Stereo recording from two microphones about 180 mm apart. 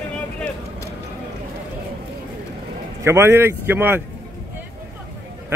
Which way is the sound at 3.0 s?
15° right (ahead or behind).